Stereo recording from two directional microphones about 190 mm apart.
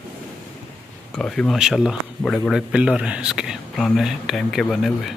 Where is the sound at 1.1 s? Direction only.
5° left (ahead or behind).